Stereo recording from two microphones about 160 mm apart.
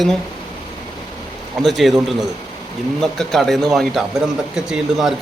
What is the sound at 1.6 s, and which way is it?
Speech, centre (ahead or behind).